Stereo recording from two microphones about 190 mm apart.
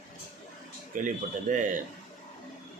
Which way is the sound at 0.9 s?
40° right (ahead or behind).